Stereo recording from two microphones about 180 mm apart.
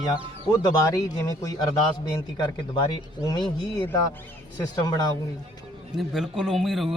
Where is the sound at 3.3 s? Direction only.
25° left (ahead or behind).